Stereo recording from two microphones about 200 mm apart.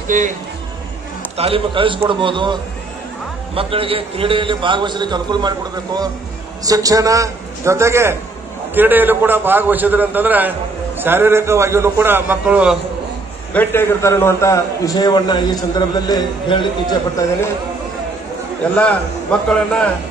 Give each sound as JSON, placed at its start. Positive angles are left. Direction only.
{"t": 0.1, "sound": "speech", "side_deg": -40}
{"t": 1.3, "sound": "a man's voice", "side_deg": -30}
{"t": 6.6, "sound": "a man's voice", "side_deg": -15}
{"t": 13.5, "sound": "a man's voice", "side_deg": 10}
{"t": 19.3, "sound": "a man's voice", "side_deg": 5}